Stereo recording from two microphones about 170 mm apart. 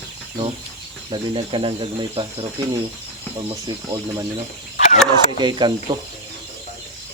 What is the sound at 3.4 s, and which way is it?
Speech, 25° right (ahead or behind).